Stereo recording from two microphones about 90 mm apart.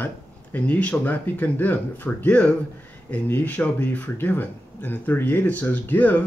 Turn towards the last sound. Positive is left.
turn(degrees=20)  # may be behind; listen again after turning